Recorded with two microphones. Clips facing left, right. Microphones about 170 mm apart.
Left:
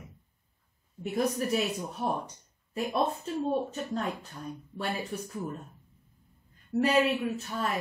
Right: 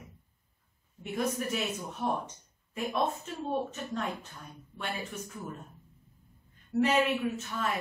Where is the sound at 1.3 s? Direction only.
35° left (ahead or behind).